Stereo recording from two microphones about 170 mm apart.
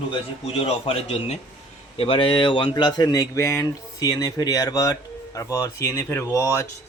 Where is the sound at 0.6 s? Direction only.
35° left (ahead or behind).